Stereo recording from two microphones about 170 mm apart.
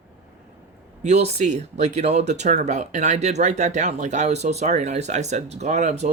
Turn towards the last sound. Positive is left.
turn(degrees=-45)  # may be behind; listen again after turning